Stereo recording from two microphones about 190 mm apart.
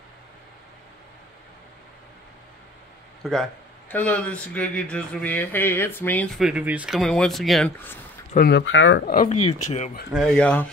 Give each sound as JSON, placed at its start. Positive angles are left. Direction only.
{"t": 3.2, "sound": "speech", "side_deg": 0}
{"t": 6.4, "sound": "speech", "side_deg": -5}
{"t": 8.4, "sound": "speech", "side_deg": 65}
{"t": 9.0, "sound": "speech", "side_deg": 50}
{"t": 9.3, "sound": "speech", "side_deg": 35}
{"t": 10.0, "sound": "speech", "side_deg": 0}